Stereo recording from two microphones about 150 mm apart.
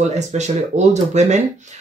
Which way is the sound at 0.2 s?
50° right (ahead or behind).